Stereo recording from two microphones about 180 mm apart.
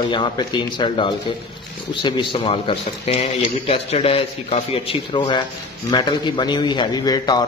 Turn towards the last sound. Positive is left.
turn(degrees=20)  # may be behind; listen again after turning